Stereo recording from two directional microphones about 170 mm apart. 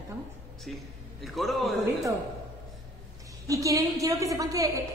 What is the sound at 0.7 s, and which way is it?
A man's voice, centre (ahead or behind).